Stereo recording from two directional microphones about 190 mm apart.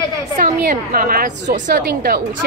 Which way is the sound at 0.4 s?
50° right (ahead or behind).